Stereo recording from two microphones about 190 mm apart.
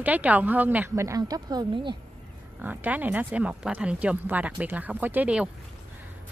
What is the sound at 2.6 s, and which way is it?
A woman's voice, 10° right (ahead or behind).